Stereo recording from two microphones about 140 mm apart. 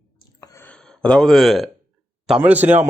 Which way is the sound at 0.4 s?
20° left (ahead or behind).